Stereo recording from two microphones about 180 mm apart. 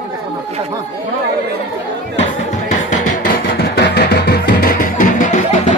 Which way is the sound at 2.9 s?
50° left (ahead or behind).